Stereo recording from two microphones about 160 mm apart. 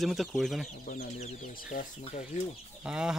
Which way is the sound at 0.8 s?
55° left (ahead or behind).